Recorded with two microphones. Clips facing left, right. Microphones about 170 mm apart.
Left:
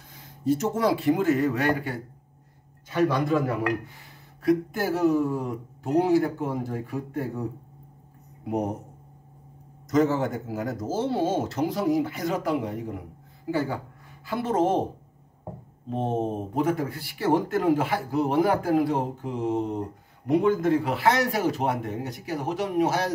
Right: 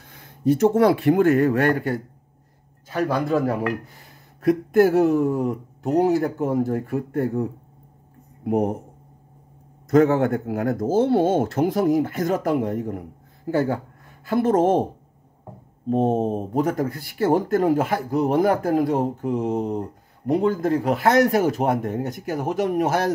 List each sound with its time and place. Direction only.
0.1 s speech: 60° right (ahead or behind)
2.9 s a man's voice: 35° right (ahead or behind)
4.4 s speech: 55° right (ahead or behind)
8.5 s speech: 50° right (ahead or behind)
9.8 s speech: 60° right (ahead or behind)
15.9 s speech: 40° right (ahead or behind)